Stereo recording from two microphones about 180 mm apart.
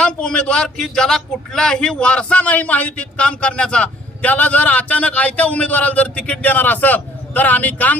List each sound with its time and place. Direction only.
0.0 s a man's voice: 5° left (ahead or behind)